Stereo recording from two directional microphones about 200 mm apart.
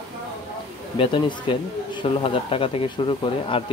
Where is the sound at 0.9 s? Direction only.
25° left (ahead or behind).